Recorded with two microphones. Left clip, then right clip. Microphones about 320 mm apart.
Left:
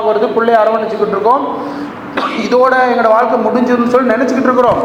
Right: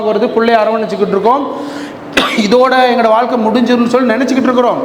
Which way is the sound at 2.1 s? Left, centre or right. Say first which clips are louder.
Right 3 dB; right.